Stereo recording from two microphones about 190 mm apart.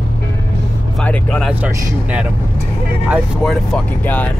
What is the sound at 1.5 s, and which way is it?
A man's voice, 10° right (ahead or behind).